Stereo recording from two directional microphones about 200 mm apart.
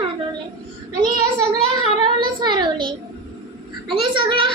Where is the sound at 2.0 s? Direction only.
20° right (ahead or behind).